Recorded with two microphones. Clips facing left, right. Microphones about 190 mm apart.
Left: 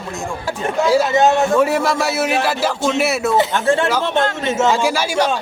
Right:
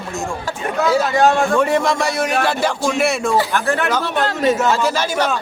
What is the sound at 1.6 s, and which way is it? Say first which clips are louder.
A man's voice: even; 5° left (ahead or behind).